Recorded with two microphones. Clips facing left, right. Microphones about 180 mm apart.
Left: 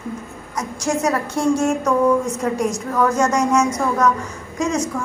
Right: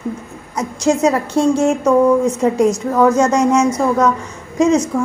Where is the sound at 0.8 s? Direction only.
25° right (ahead or behind).